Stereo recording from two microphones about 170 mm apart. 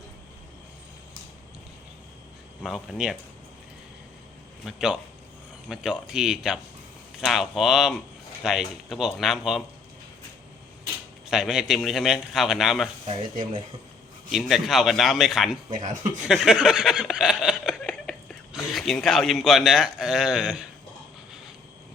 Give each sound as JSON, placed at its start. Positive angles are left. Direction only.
{"t": 2.6, "sound": "a man's voice", "side_deg": -5}
{"t": 4.6, "sound": "a man's voice", "side_deg": -5}
{"t": 11.3, "sound": "a man's voice", "side_deg": 0}
{"t": 14.3, "sound": "a man's voice", "side_deg": 0}
{"t": 15.7, "sound": "speech", "side_deg": -45}
{"t": 16.2, "sound": "speech", "side_deg": -5}